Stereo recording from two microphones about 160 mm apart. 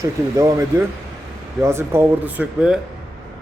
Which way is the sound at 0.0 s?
20° right (ahead or behind).